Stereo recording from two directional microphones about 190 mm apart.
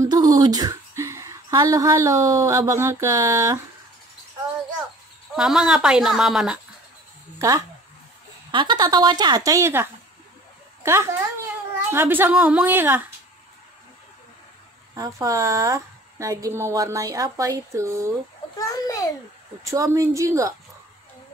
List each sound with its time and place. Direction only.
0.0 s a woman's voice: 20° right (ahead or behind)
5.3 s speech: 5° right (ahead or behind)
7.3 s a woman's voice: 15° right (ahead or behind)
15.0 s a woman's voice: 15° right (ahead or behind)
18.6 s a sound: 15° left (ahead or behind)
19.6 s a woman's voice: 15° right (ahead or behind)